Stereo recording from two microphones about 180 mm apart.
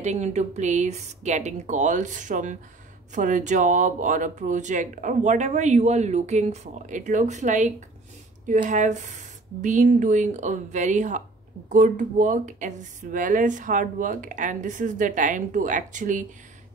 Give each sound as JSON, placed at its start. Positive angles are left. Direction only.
{"t": 0.0, "sound": "speech", "side_deg": -40}